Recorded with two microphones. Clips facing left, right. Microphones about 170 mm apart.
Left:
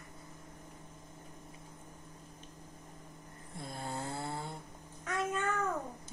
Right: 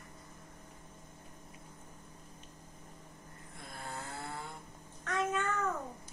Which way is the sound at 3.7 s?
30° left (ahead or behind).